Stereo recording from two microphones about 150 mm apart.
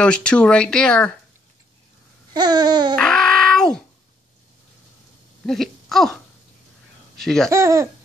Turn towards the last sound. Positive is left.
turn(degrees=-20)  # may be behind; listen again after turning